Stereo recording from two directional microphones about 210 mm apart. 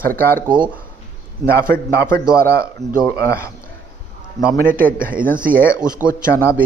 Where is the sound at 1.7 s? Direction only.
10° left (ahead or behind).